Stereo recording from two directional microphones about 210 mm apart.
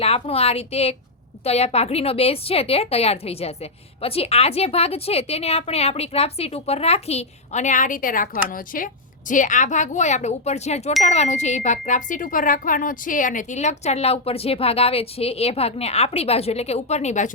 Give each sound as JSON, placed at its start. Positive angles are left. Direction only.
{"t": 0.0, "sound": "a woman's voice", "side_deg": 30}